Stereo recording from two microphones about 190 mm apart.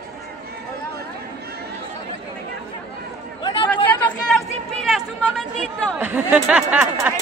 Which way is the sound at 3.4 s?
25° left (ahead or behind).